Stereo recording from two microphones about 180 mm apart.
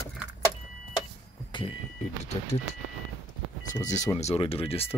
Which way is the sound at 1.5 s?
30° left (ahead or behind).